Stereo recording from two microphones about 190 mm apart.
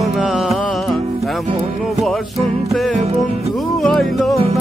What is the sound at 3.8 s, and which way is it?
Music, centre (ahead or behind).